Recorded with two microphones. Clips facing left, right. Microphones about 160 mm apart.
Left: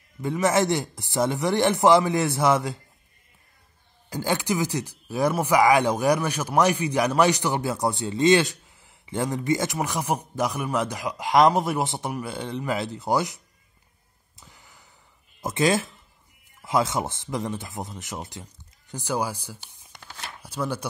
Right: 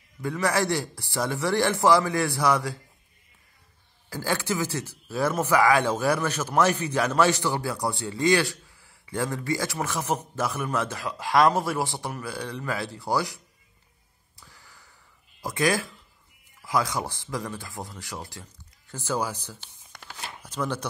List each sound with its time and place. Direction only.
0.2 s a man's voice: 20° left (ahead or behind)
4.1 s speech: 20° left (ahead or behind)
14.3 s a sound: 20° left (ahead or behind)
15.4 s a man's voice: 25° left (ahead or behind)